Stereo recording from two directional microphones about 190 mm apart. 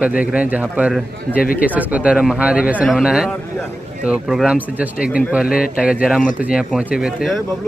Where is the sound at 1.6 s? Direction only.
10° right (ahead or behind).